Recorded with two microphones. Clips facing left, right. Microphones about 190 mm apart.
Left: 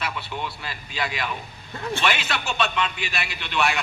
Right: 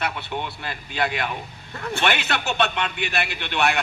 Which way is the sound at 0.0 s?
60° right (ahead or behind).